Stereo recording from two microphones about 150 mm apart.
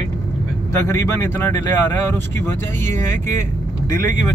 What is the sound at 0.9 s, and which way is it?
Speech, 20° left (ahead or behind).